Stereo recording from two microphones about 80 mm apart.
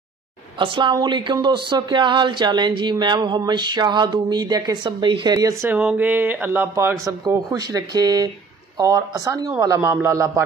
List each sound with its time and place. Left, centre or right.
0.6 s speech: right
4.8 s speech: right
5.7 s speech: centre
7.1 s speech: right